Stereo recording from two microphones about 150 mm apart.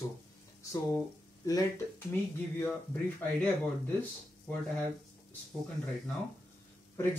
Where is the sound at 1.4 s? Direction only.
25° left (ahead or behind).